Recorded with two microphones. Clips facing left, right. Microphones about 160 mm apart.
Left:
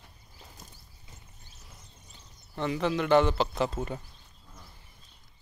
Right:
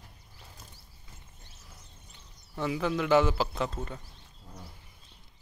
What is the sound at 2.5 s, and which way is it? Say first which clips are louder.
Speech: left 1 dB; 5° right (ahead or behind).